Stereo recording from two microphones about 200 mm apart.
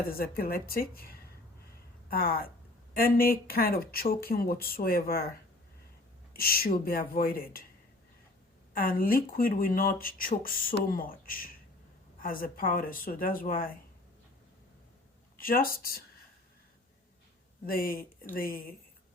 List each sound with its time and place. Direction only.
0.2 s speech: 50° left (ahead or behind)
2.0 s speech: 45° left (ahead or behind)
6.3 s speech: 50° left (ahead or behind)
8.7 s speech: 45° left (ahead or behind)
15.4 s speech: 45° left (ahead or behind)
17.7 s speech: 45° left (ahead or behind)